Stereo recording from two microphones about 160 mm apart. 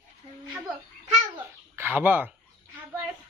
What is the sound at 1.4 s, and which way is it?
Bird, 15° right (ahead or behind).